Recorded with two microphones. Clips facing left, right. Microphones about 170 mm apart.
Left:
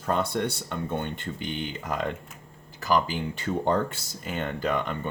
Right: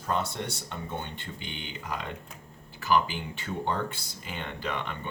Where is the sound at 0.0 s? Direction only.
60° left (ahead or behind).